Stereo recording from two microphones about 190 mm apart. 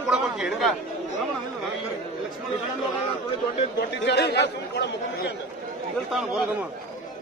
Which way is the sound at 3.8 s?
60° left (ahead or behind).